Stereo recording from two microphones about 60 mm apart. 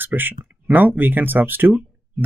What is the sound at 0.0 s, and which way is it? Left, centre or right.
Speech, right.